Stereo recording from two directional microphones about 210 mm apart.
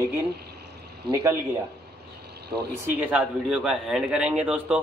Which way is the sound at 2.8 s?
10° right (ahead or behind).